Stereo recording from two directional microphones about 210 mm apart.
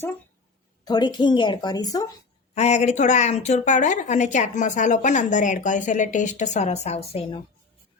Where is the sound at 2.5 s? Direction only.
30° left (ahead or behind).